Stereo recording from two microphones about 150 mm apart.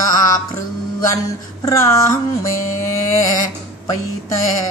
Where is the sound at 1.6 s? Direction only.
20° left (ahead or behind).